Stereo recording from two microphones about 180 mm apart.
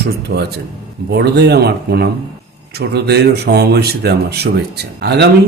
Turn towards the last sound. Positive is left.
turn(degrees=-70)  # may be behind; listen again after turning